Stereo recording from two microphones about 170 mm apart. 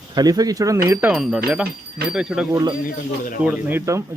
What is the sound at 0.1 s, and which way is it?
Speech, 25° right (ahead or behind).